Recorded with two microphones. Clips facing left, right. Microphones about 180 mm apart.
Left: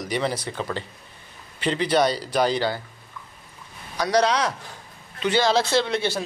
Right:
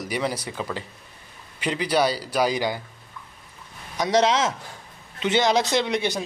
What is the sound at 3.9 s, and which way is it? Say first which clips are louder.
A man's voice: right 1 dB; 25° right (ahead or behind).